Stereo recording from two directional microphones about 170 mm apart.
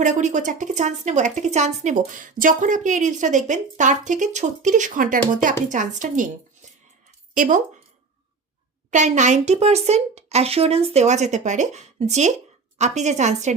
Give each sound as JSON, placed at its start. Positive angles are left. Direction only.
{"t": 0.0, "sound": "a woman's voice", "side_deg": -45}
{"t": 7.3, "sound": "a woman's voice", "side_deg": -50}
{"t": 8.9, "sound": "a woman's voice", "side_deg": -45}